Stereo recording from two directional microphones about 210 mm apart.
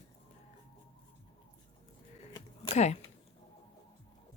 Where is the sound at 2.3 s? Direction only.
30° left (ahead or behind).